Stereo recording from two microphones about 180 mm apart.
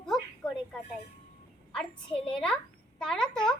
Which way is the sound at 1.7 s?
5° left (ahead or behind).